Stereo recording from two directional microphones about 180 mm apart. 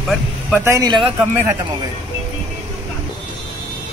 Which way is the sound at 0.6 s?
20° right (ahead or behind).